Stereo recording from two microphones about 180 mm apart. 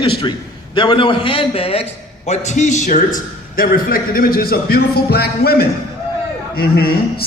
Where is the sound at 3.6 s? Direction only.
55° left (ahead or behind).